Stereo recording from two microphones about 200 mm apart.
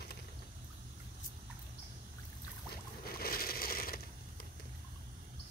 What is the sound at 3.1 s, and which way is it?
Crushing, 50° left (ahead or behind).